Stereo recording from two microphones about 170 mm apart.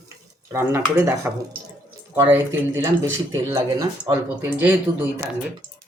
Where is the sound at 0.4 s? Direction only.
15° right (ahead or behind).